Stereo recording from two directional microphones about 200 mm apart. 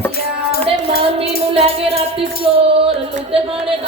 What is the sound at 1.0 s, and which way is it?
Music, 30° right (ahead or behind).